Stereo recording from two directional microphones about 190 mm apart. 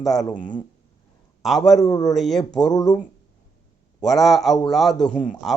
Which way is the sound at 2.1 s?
Centre (ahead or behind).